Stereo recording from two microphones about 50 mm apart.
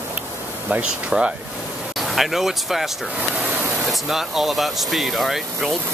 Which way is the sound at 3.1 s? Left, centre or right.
Right.